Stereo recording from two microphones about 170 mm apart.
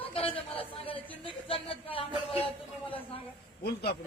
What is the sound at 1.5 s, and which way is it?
Speech, 30° left (ahead or behind).